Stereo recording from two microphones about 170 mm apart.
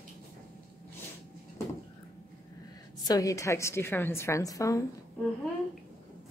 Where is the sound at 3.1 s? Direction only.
20° left (ahead or behind).